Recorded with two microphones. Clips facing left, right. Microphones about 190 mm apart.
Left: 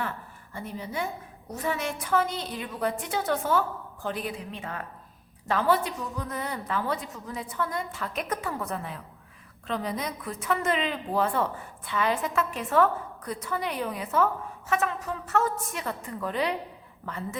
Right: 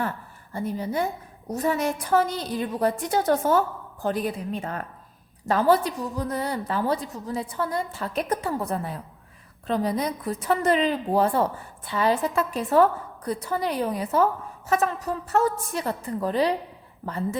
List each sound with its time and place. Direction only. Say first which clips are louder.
0.5 s a woman's voice: right 7 dB; 40° right (ahead or behind)